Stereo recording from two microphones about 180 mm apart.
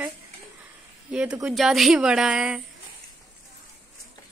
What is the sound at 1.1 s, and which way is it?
A woman's voice, 5° right (ahead or behind).